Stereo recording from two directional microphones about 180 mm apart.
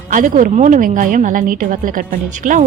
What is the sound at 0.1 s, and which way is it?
Speech, 45° right (ahead or behind).